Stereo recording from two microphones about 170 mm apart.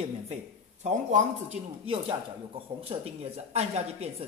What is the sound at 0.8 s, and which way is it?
Speech, 40° right (ahead or behind).